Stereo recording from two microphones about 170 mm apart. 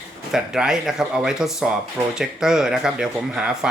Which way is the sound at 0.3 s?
5° right (ahead or behind).